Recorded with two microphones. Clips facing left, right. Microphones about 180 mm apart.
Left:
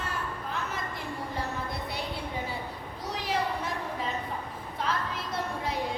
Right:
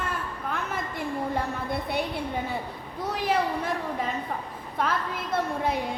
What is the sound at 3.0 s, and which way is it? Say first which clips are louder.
Speech: right 7 dB; 55° right (ahead or behind).